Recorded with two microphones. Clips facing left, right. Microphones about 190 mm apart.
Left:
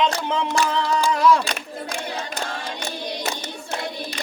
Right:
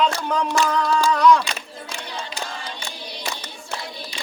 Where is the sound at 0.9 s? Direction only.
20° left (ahead or behind).